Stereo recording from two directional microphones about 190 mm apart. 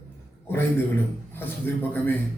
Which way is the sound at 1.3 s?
10° left (ahead or behind).